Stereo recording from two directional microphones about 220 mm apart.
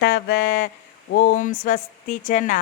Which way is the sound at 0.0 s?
45° left (ahead or behind).